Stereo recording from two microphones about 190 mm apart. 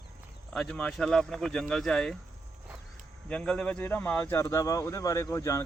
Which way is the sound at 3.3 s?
5° left (ahead or behind).